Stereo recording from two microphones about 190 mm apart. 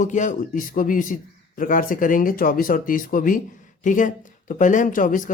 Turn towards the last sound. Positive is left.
turn(degrees=45)  # may be behind; listen again after turning